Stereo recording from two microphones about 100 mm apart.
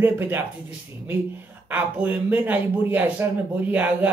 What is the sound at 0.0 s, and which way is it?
Speech, 20° right (ahead or behind).